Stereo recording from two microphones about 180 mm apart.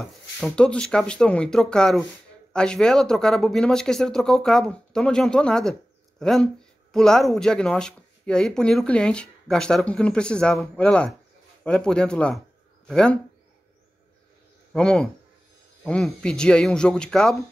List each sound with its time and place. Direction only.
0.0 s speech: 5° left (ahead or behind)
14.7 s speech: 5° left (ahead or behind)